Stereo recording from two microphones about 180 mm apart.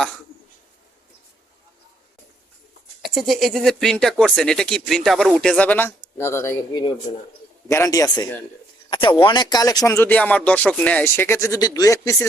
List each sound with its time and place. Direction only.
3.0 s a man's voice: centre (ahead or behind); by 12.1 s 20° left (ahead or behind)